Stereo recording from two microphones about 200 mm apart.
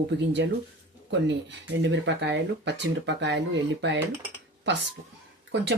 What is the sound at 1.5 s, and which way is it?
Speech, 65° right (ahead or behind).